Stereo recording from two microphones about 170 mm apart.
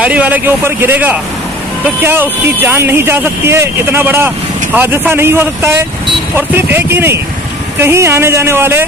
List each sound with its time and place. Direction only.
0.0 s speech: 10° right (ahead or behind)